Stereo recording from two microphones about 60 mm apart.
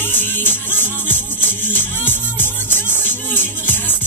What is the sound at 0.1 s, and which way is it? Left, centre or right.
Music, left.